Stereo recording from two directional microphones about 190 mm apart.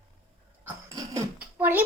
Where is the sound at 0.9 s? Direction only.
15° right (ahead or behind).